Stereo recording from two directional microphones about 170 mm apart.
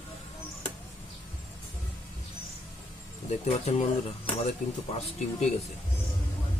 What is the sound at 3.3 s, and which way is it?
Speech, 40° left (ahead or behind).